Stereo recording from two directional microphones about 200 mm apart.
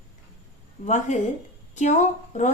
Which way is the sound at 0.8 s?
35° left (ahead or behind).